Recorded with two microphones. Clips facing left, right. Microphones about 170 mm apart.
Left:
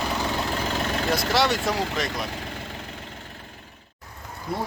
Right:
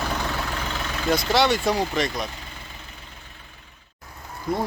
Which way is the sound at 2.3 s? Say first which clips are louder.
Left 7 dB; 75° left (ahead or behind).